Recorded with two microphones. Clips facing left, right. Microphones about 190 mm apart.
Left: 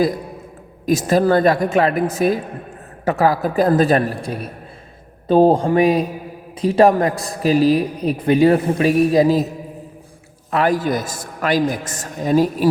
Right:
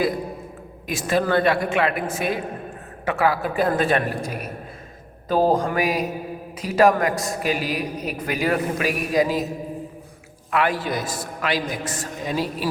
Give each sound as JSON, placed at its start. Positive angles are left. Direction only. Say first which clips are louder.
{"t": 0.9, "sound": "a woman's voice", "louder": "left 7 dB", "side_deg": 40}
{"t": 5.3, "sound": "a woman's voice", "louder": "left 6 dB", "side_deg": 30}
{"t": 10.5, "sound": "a man's voice", "louder": "left 5 dB", "side_deg": 40}